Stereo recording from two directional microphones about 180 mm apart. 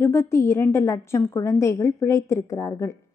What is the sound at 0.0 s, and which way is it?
A woman's voice, 15° left (ahead or behind).